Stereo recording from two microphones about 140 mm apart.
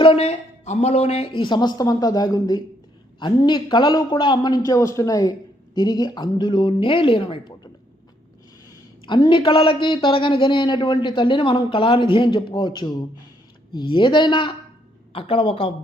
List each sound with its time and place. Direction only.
0.0 s a woman's voice: 40° left (ahead or behind)
9.0 s a woman's voice: 35° left (ahead or behind)